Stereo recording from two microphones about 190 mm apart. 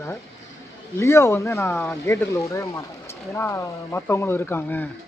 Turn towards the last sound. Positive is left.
turn(degrees=10)  # may be behind; listen again after turning